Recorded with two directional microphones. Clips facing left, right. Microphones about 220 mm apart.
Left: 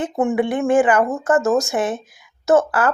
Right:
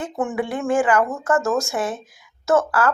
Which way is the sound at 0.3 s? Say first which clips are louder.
Left 4 dB; 20° left (ahead or behind).